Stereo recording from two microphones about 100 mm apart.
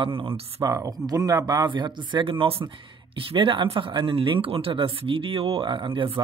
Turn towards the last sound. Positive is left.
turn(degrees=-60)  # may be behind; listen again after turning